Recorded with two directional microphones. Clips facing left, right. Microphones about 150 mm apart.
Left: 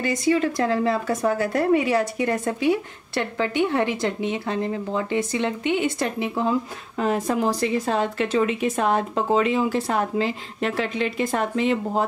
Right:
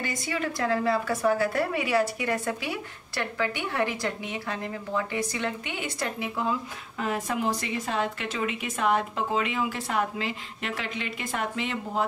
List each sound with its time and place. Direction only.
0.0 s speech: 25° left (ahead or behind)